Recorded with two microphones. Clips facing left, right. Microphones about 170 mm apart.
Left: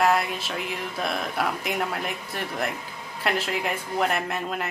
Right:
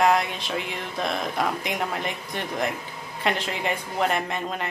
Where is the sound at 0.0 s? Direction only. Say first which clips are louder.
Right 1 dB; 5° left (ahead or behind).